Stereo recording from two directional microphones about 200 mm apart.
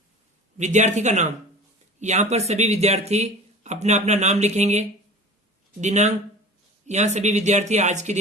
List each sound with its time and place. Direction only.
0.5 s speech: 35° right (ahead or behind)